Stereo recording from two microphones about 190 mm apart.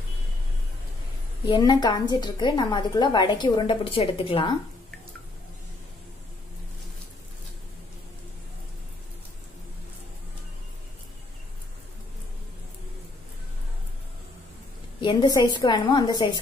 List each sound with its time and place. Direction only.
1.4 s a woman's voice: 20° left (ahead or behind)
15.0 s a woman's voice: 25° left (ahead or behind)